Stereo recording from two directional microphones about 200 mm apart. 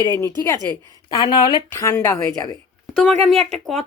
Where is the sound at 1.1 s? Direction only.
20° left (ahead or behind).